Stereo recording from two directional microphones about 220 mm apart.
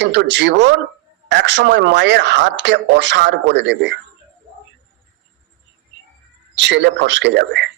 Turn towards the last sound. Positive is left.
turn(degrees=-50)  # may be behind; listen again after turning